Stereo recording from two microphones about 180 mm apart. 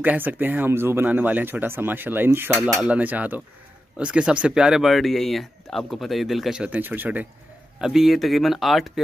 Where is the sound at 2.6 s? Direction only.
Centre (ahead or behind).